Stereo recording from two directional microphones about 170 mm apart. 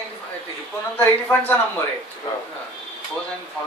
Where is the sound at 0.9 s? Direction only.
10° left (ahead or behind).